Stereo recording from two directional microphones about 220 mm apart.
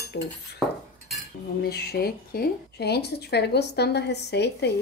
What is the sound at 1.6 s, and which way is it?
Speech, 45° left (ahead or behind).